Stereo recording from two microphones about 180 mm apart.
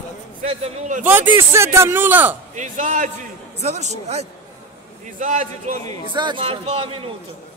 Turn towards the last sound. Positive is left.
turn(degrees=-30)  # may be behind; listen again after turning